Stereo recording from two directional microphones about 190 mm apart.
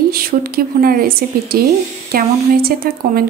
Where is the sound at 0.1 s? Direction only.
50° right (ahead or behind).